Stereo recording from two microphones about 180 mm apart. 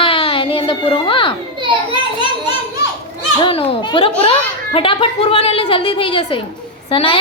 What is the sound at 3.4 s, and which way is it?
A child's voice, 30° left (ahead or behind).